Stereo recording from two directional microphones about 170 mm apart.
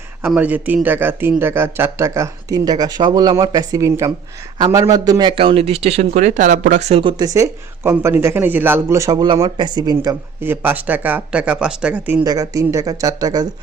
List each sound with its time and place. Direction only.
0.2 s speech: 10° right (ahead or behind); by 7.3 s 30° right (ahead or behind)
7.3 s speech: 15° right (ahead or behind)
12.2 s speech: 20° right (ahead or behind)